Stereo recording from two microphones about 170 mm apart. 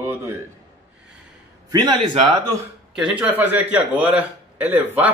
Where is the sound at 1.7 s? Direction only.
25° right (ahead or behind).